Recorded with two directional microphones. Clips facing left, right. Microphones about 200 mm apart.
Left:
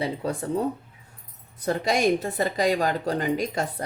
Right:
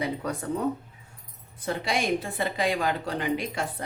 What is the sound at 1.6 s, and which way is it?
A woman's voice, 40° left (ahead or behind).